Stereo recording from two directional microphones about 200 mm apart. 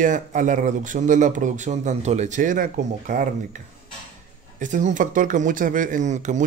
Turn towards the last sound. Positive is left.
turn(degrees=-35)  # may be behind; listen again after turning